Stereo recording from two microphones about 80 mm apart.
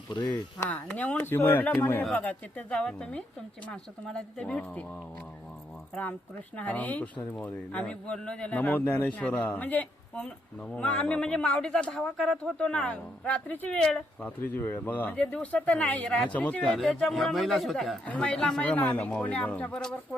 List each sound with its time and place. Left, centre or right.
0.7 s speech: centre
2.1 s speech: centre
5.9 s speech: centre
14.3 s speech: left
16.7 s speech: centre
18.0 s speech: centre